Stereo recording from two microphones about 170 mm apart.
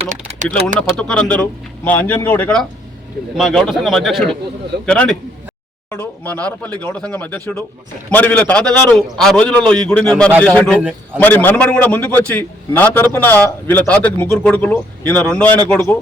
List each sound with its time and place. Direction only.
0.1 s typing: 50° right (ahead or behind)
0.8 s a man's voice: 5° left (ahead or behind)
10.8 s a man's voice: 10° right (ahead or behind)
11.2 s a man's voice: 10° left (ahead or behind)